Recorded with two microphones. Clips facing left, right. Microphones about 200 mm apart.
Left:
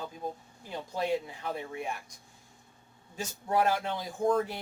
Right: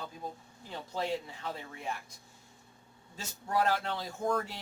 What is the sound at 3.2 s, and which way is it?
Speech, 15° left (ahead or behind).